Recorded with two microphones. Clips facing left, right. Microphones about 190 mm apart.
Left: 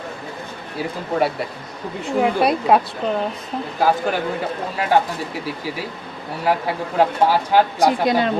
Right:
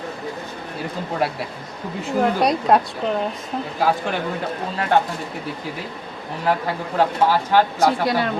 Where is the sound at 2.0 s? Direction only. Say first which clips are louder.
Left 1 dB; 5° left (ahead or behind).